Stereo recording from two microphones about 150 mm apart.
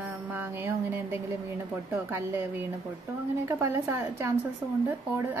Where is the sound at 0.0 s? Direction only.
10° right (ahead or behind).